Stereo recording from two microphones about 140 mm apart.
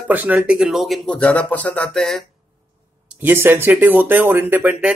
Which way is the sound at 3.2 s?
15° right (ahead or behind).